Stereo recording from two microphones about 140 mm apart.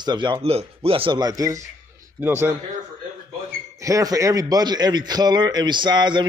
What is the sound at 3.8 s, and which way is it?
A man's voice, 25° right (ahead or behind).